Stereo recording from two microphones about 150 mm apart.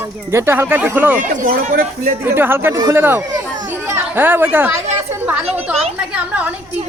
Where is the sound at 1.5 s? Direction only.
65° right (ahead or behind).